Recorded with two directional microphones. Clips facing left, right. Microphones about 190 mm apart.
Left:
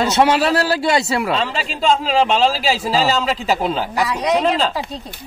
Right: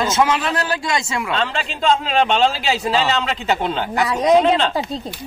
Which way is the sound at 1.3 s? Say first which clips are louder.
Left 1 dB; 5° left (ahead or behind).